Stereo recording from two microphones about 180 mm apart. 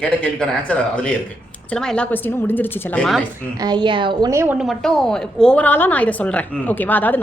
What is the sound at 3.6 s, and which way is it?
Speech, 25° right (ahead or behind).